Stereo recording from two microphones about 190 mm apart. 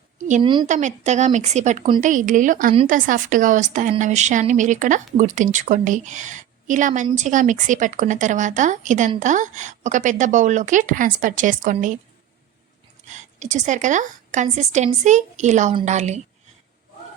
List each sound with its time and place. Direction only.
0.4 s speech: 25° right (ahead or behind)
0.7 s a woman's voice: 40° right (ahead or behind)
13.1 s a woman's voice: 40° right (ahead or behind)